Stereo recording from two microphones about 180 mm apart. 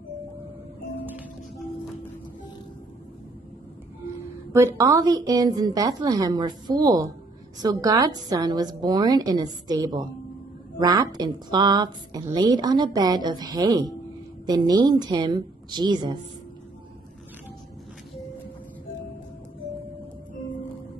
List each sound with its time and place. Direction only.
4.6 s a woman's voice: 15° right (ahead or behind)